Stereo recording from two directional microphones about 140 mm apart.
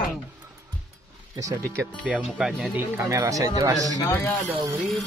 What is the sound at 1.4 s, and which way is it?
Speech, 25° right (ahead or behind).